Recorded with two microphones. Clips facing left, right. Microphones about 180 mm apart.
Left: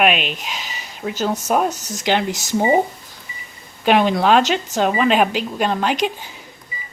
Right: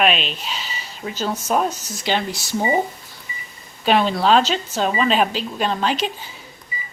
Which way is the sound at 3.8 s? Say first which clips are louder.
Left 2 dB; 15° left (ahead or behind).